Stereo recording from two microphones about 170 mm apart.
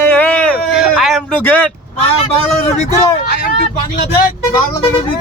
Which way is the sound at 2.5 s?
40° left (ahead or behind).